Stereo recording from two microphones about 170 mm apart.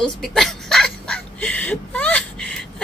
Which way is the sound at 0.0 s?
Centre (ahead or behind).